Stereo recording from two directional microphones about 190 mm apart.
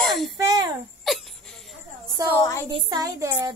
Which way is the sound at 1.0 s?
Centre (ahead or behind).